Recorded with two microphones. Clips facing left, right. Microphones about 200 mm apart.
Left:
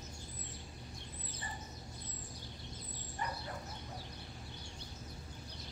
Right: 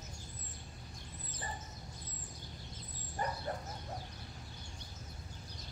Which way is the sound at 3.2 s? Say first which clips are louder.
Right 4 dB; 40° right (ahead or behind).